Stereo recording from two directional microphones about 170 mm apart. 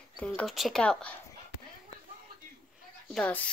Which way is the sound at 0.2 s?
5° left (ahead or behind).